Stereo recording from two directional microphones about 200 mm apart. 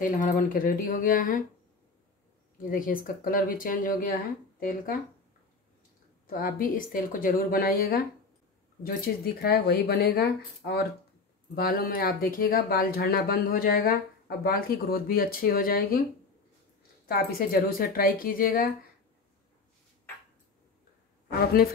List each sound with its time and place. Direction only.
0.0 s speech: 45° left (ahead or behind)
2.7 s speech: 45° left (ahead or behind)
6.2 s speech: 45° left (ahead or behind)
17.0 s speech: 50° left (ahead or behind)